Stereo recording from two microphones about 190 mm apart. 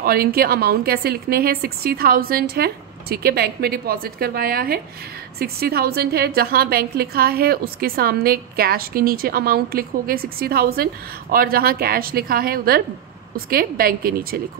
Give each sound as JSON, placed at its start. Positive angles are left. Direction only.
{"t": 0.0, "sound": "a woman's voice", "side_deg": -50}